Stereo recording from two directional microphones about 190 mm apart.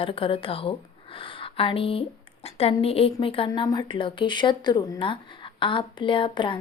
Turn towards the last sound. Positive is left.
turn(degrees=25)  # may be behind; listen again after turning